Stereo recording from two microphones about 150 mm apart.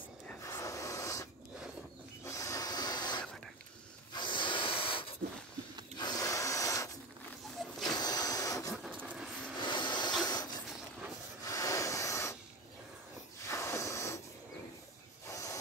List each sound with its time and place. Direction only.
0.4 s a sound: 20° left (ahead or behind)
4.1 s snort: 30° left (ahead or behind)
7.6 s vehicle: centre (ahead or behind)
7.9 s printer: 25° left (ahead or behind)
9.0 s vehicle: 5° right (ahead or behind)
9.7 s a sound: 30° left (ahead or behind)
13.5 s snort: 20° left (ahead or behind)
15.2 s hiss: 20° left (ahead or behind)